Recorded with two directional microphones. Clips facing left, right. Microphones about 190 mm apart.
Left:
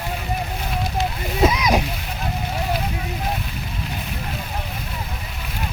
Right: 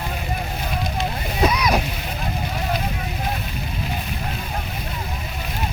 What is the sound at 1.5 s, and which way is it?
Splash, 20° left (ahead or behind).